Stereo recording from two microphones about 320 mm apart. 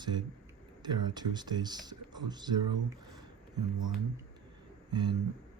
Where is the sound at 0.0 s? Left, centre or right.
Centre.